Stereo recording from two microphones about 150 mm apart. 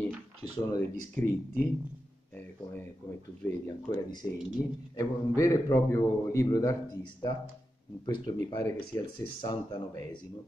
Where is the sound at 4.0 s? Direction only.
30° left (ahead or behind).